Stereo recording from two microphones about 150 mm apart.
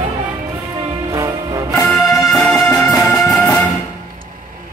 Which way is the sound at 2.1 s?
25° left (ahead or behind).